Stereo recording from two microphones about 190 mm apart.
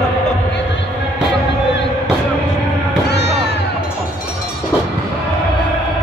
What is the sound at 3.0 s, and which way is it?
Music, 65° left (ahead or behind).